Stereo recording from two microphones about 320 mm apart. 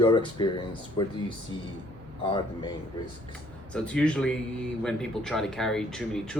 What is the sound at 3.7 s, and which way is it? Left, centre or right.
Speech, centre.